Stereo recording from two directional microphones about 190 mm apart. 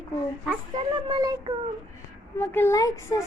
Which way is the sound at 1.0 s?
20° right (ahead or behind).